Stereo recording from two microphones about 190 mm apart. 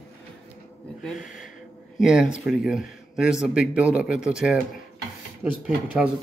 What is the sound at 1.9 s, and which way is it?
Speech, 5° right (ahead or behind).